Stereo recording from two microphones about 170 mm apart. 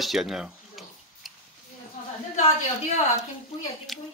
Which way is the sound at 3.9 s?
Centre (ahead or behind).